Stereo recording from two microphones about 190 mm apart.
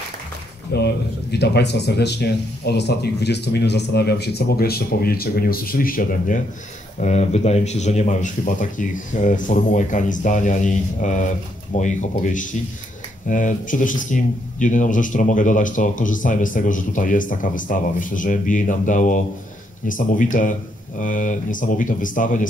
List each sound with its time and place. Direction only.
0.7 s speech: 60° left (ahead or behind); by 22.5 s 45° left (ahead or behind)